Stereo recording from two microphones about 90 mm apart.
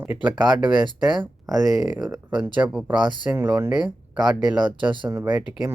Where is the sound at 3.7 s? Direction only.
50° right (ahead or behind).